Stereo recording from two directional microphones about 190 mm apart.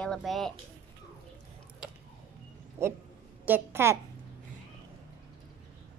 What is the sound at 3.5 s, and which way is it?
Speech, 15° right (ahead or behind).